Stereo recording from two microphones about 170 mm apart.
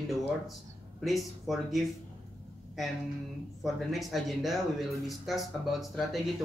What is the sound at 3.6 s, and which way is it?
Speech, centre (ahead or behind).